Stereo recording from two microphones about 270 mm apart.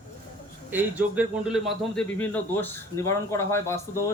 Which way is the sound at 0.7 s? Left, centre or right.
Centre.